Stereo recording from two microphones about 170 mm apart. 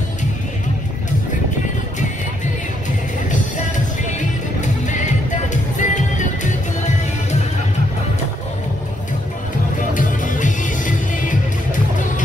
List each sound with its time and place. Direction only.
4.6 s music: 45° left (ahead or behind)
9.9 s music: 50° left (ahead or behind)